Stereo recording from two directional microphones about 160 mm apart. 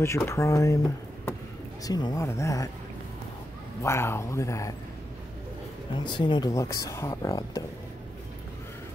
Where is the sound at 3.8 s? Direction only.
15° left (ahead or behind).